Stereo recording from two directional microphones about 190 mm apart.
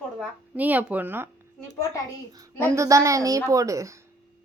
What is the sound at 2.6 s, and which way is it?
A woman's voice, 15° right (ahead or behind).